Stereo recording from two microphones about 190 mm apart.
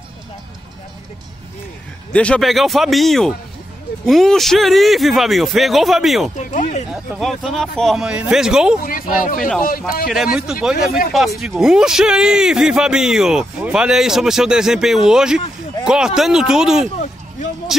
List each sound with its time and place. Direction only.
2.1 s a man's voice: 5° left (ahead or behind)
6.3 s speech: 40° left (ahead or behind)
6.9 s a man's voice: centre (ahead or behind)
8.8 s speech: 50° left (ahead or behind)
10.0 s a man's voice: centre (ahead or behind)